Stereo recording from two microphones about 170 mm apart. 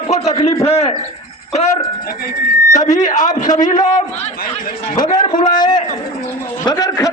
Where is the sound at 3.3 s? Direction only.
25° left (ahead or behind).